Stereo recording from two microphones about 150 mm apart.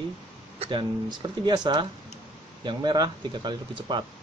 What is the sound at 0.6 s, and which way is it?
Speech, 35° right (ahead or behind).